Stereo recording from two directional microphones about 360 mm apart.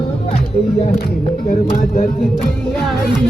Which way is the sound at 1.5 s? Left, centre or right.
Left.